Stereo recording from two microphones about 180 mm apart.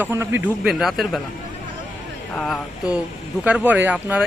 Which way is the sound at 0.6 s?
Centre (ahead or behind).